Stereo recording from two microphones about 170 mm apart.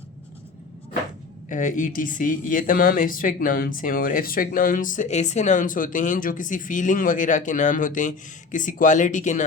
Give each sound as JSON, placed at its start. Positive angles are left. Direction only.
{"t": 1.5, "sound": "speech", "side_deg": 50}